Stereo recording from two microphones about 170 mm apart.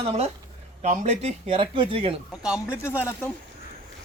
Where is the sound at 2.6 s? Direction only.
15° left (ahead or behind).